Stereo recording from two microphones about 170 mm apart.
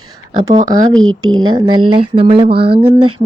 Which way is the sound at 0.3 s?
25° right (ahead or behind).